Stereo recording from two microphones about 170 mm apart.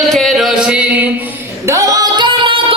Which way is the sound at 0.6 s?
5° right (ahead or behind).